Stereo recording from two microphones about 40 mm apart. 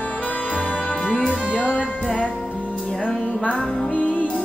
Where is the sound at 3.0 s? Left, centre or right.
Left.